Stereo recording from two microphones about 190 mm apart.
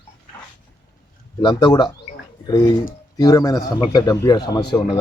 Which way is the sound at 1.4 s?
25° left (ahead or behind).